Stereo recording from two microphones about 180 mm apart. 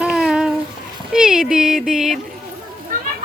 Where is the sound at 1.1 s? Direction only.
5° right (ahead or behind).